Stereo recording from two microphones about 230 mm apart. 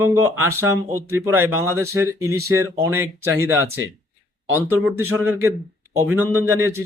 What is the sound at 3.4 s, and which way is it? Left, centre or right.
Speech, right.